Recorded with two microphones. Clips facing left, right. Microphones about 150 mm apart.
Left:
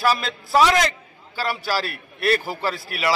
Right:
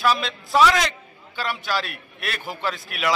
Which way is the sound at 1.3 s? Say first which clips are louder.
Left 2 dB; 35° left (ahead or behind).